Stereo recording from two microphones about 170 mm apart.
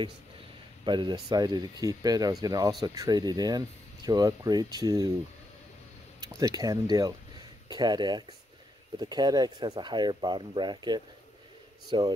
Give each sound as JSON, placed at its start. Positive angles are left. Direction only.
{"t": 0.8, "sound": "speech", "side_deg": -25}
{"t": 6.2, "sound": "speech", "side_deg": -20}